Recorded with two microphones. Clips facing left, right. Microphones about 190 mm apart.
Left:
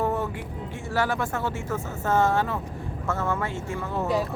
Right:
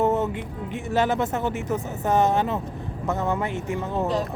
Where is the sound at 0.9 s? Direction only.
20° right (ahead or behind).